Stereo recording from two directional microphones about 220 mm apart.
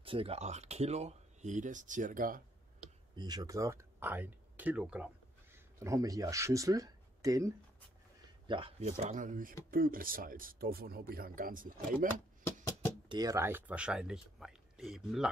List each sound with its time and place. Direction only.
0.0 s speech: 25° right (ahead or behind)
3.2 s speech: 15° right (ahead or behind)
5.9 s speech: 15° right (ahead or behind)
8.9 s speech: 35° right (ahead or behind)
12.4 s a sound: 10° left (ahead or behind)
13.1 s speech: 15° right (ahead or behind)